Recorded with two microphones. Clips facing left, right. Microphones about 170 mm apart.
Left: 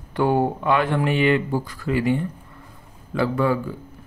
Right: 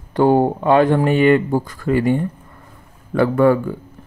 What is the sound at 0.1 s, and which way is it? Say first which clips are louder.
Speech: right 6 dB; 40° right (ahead or behind).